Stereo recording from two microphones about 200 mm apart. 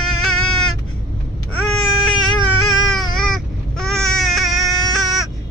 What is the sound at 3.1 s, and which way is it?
Baby cry, centre (ahead or behind).